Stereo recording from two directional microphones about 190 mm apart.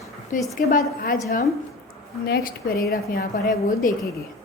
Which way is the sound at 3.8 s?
45° left (ahead or behind).